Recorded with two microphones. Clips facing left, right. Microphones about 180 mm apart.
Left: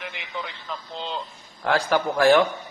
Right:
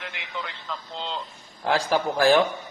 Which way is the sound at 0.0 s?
20° left (ahead or behind).